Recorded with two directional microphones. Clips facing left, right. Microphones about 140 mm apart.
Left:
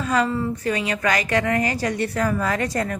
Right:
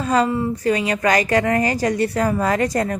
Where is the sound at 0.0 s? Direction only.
30° right (ahead or behind).